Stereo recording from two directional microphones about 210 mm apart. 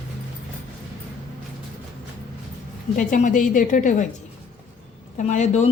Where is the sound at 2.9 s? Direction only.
40° left (ahead or behind).